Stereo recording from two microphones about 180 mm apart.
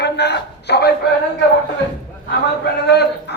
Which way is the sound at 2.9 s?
65° left (ahead or behind).